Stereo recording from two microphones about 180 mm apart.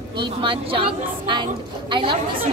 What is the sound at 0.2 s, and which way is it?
A woman's voice, 30° right (ahead or behind).